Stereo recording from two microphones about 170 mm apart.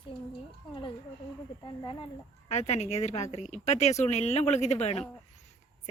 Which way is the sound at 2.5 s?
40° left (ahead or behind).